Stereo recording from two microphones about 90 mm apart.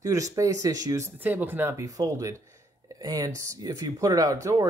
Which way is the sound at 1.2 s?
20° right (ahead or behind).